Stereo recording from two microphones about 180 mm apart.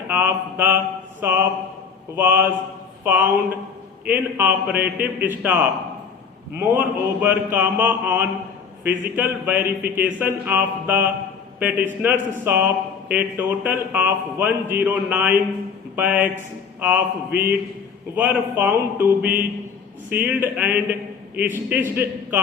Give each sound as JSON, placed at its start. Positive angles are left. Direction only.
{"t": 0.1, "sound": "speech", "side_deg": -10}